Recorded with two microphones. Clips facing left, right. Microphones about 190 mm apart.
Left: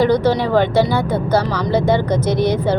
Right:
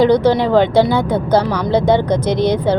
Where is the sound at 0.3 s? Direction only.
15° right (ahead or behind).